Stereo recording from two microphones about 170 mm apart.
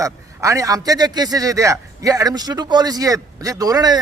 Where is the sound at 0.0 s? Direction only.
20° right (ahead or behind).